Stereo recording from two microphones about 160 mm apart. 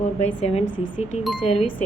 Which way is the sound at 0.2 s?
40° left (ahead or behind).